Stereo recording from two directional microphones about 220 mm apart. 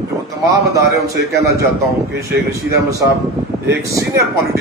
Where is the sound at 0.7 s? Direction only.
15° right (ahead or behind).